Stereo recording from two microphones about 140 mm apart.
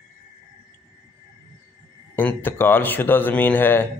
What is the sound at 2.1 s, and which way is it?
A man's voice, 15° left (ahead or behind).